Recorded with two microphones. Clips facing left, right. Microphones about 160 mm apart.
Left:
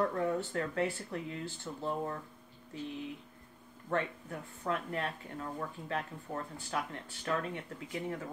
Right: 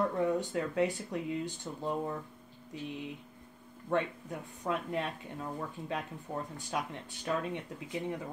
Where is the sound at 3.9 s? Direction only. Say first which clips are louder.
Right 2 dB; 15° right (ahead or behind).